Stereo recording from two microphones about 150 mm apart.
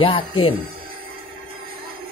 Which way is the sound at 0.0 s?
40° left (ahead or behind).